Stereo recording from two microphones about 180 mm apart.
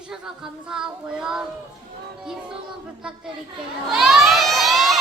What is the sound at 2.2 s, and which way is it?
Speech, centre (ahead or behind).